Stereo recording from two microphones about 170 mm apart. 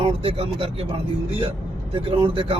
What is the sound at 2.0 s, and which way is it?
Speech, 30° right (ahead or behind).